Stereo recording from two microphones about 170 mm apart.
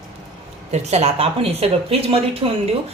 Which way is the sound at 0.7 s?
40° right (ahead or behind).